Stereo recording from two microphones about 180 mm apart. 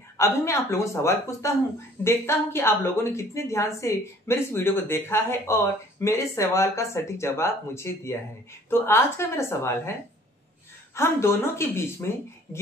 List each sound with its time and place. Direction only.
0.2 s a woman's voice: 15° left (ahead or behind)
11.0 s a woman's voice: 15° left (ahead or behind)